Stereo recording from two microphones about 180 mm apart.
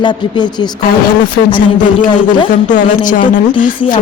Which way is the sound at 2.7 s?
45° left (ahead or behind).